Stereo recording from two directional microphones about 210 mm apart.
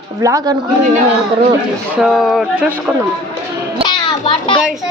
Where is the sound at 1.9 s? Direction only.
Centre (ahead or behind).